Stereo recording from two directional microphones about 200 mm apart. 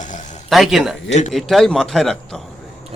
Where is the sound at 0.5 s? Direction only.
Centre (ahead or behind).